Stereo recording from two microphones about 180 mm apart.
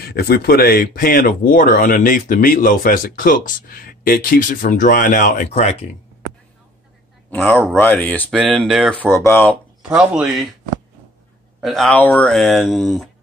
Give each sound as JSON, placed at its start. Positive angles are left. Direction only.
{"t": 0.0, "sound": "speech", "side_deg": 60}
{"t": 7.2, "sound": "speech", "side_deg": 10}
{"t": 9.1, "sound": "speech", "side_deg": 15}
{"t": 9.8, "sound": "speech", "side_deg": -5}
{"t": 11.6, "sound": "speech", "side_deg": 0}